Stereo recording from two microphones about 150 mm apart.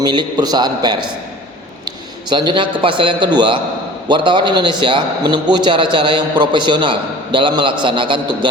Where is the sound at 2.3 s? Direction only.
30° right (ahead or behind).